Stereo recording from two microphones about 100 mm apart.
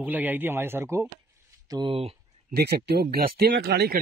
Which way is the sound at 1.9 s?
75° right (ahead or behind).